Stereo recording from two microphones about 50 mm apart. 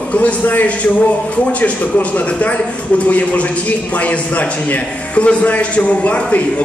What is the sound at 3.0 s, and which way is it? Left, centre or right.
A man's voice, left.